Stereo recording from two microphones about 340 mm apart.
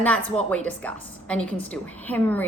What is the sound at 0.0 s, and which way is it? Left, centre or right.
A woman's voice, centre.